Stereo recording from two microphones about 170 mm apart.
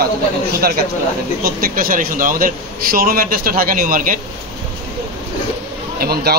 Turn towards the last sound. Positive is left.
turn(degrees=-65)  # may be behind; listen again after turning